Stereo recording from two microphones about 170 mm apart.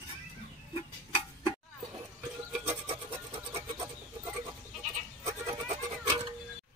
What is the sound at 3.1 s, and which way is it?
Music, 15° right (ahead or behind).